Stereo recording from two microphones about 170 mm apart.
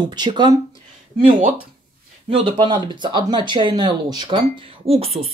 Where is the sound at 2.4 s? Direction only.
30° right (ahead or behind).